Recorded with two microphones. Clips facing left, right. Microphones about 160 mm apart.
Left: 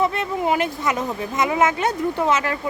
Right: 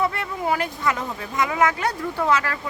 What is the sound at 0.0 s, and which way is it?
Speech, 20° left (ahead or behind).